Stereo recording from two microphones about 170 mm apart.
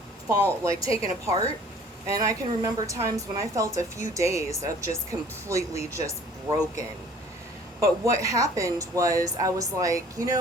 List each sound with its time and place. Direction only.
0.6 s a woman's voice: 20° right (ahead or behind)